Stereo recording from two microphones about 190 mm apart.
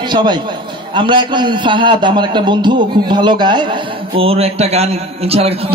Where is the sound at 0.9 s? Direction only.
25° right (ahead or behind).